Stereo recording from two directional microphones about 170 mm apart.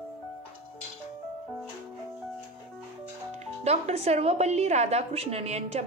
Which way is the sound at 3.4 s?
40° right (ahead or behind).